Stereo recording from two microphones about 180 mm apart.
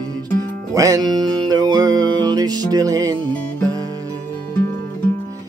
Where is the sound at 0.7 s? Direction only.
20° right (ahead or behind).